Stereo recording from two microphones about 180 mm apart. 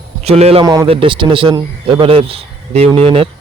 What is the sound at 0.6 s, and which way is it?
A man's voice, 20° right (ahead or behind).